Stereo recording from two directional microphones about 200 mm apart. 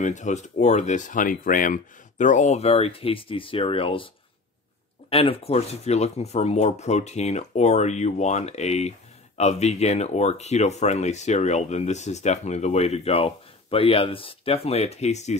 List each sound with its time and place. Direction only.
0.0 s speech: 35° left (ahead or behind)
5.1 s speech: 30° left (ahead or behind)